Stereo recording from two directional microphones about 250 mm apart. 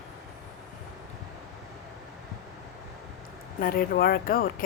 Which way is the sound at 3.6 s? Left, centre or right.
Left.